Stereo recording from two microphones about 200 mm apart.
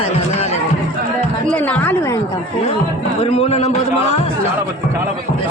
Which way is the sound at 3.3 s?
30° left (ahead or behind).